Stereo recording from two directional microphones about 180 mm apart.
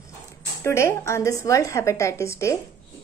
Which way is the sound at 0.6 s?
15° left (ahead or behind).